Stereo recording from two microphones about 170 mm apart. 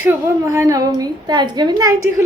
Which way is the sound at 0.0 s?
15° right (ahead or behind).